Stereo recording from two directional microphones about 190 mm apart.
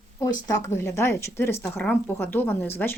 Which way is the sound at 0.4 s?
15° left (ahead or behind).